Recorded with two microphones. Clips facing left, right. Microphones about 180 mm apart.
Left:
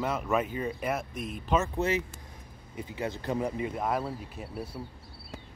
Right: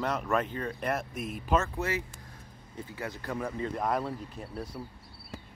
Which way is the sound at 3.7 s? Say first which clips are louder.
Even; 5° left (ahead or behind).